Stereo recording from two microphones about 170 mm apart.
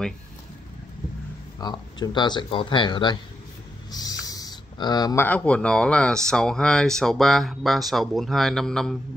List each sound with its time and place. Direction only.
1.6 s speech: 25° left (ahead or behind)
3.9 s a sound: 20° left (ahead or behind)
5.2 s speech: 10° left (ahead or behind)